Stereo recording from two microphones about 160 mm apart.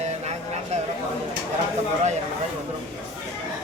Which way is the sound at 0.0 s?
45° right (ahead or behind).